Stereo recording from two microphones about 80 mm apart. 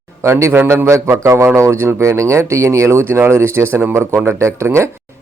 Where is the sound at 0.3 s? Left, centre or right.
Right.